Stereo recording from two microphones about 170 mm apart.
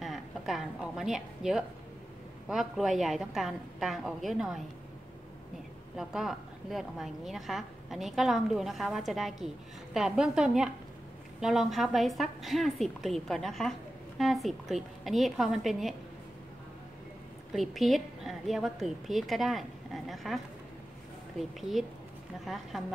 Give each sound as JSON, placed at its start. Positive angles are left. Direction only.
{"t": 0.0, "sound": "a woman's voice", "side_deg": 0}
{"t": 5.9, "sound": "a woman's voice", "side_deg": 0}
{"t": 17.5, "sound": "a woman's voice", "side_deg": 0}
{"t": 21.4, "sound": "a woman's voice", "side_deg": 0}